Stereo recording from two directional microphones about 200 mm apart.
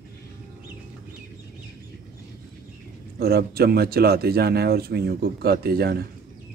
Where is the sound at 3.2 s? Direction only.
50° right (ahead or behind).